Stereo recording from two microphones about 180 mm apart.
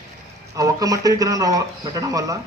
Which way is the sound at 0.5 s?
20° right (ahead or behind).